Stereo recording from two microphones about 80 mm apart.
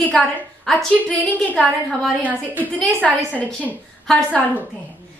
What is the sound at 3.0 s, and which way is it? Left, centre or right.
A woman's voice, centre.